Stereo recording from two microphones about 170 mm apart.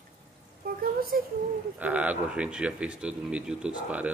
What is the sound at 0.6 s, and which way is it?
Speech, 60° right (ahead or behind).